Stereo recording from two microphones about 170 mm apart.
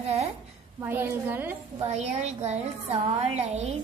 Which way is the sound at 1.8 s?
40° right (ahead or behind).